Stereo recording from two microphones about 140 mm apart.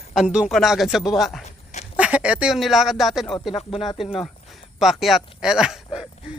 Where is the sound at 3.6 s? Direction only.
45° left (ahead or behind).